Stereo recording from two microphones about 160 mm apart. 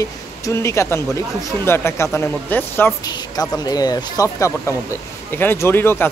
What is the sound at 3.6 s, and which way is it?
Speech, 25° left (ahead or behind).